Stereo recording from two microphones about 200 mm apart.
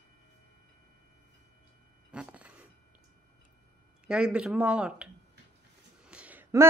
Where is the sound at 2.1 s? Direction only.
5° right (ahead or behind).